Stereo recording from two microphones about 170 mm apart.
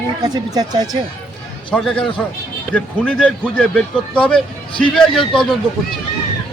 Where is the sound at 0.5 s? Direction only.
25° right (ahead or behind).